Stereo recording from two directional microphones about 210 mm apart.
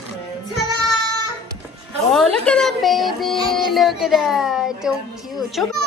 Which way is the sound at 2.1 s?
5° left (ahead or behind).